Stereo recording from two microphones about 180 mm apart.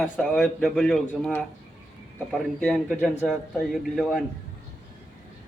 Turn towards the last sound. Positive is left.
turn(degrees=0)  # may be behind; listen again after turning